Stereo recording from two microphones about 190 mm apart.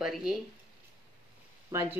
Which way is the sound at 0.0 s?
5° right (ahead or behind).